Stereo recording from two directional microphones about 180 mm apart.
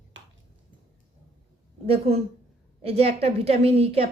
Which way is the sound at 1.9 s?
35° right (ahead or behind).